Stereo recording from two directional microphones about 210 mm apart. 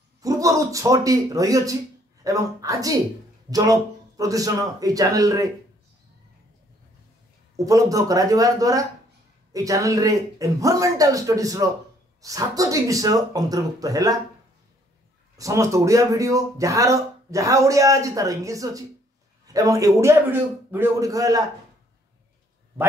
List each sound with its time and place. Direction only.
0.2 s speech: 15° right (ahead or behind)
7.5 s speech: 15° right (ahead or behind)
15.3 s speech: 15° right (ahead or behind)